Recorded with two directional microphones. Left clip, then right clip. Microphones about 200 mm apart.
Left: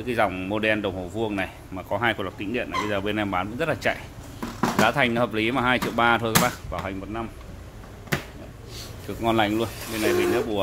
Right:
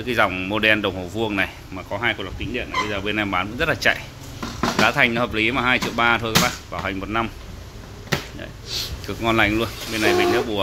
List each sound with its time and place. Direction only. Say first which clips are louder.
0.0 s speech: right 4 dB; 5° left (ahead or behind)
1.9 s speech: right 1 dB; 20° left (ahead or behind)
7.0 s speech: right 9 dB; 10° right (ahead or behind)
9.0 s speech: right 3 dB; 5° left (ahead or behind)